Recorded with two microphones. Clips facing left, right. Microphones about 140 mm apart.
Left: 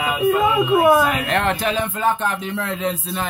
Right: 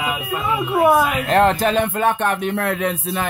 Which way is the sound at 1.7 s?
60° right (ahead or behind).